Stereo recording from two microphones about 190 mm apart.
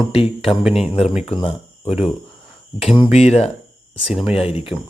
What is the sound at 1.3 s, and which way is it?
Speech, 30° left (ahead or behind).